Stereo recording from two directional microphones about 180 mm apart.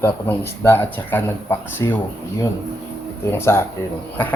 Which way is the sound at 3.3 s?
15° left (ahead or behind).